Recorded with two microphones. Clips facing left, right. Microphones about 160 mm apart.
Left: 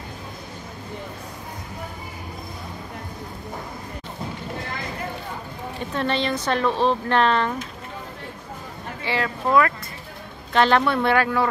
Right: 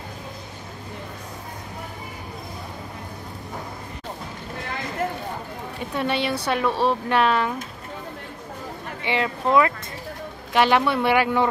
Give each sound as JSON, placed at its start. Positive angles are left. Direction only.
{"t": 5.9, "sound": "speech", "side_deg": -10}
{"t": 9.0, "sound": "speech", "side_deg": -20}